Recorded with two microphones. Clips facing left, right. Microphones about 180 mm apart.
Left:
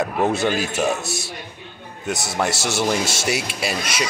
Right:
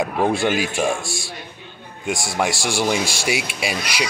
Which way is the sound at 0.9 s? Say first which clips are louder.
Left 1 dB; 20° left (ahead or behind).